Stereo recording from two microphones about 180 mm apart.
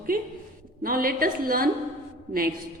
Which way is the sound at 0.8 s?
55° right (ahead or behind).